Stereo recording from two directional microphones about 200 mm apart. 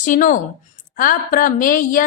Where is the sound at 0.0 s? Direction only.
40° left (ahead or behind).